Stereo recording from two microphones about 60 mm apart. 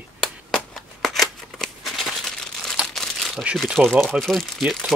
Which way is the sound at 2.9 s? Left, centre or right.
Centre.